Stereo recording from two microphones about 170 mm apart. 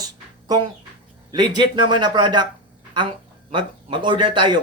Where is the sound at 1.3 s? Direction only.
25° right (ahead or behind).